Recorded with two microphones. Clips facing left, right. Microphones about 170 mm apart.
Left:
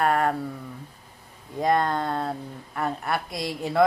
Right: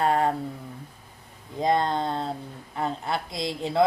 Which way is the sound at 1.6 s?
25° right (ahead or behind).